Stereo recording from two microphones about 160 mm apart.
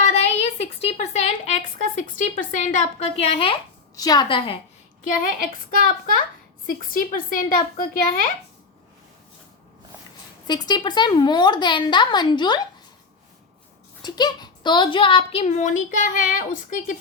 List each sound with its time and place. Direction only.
0.0 s a sound: 40° left (ahead or behind)
3.9 s a woman's voice: 25° left (ahead or behind)
5.0 s a woman's voice: 60° left (ahead or behind)
10.4 s a woman's voice: 25° left (ahead or behind)
14.0 s a woman's voice: 25° left (ahead or behind); by 16.8 s 55° left (ahead or behind)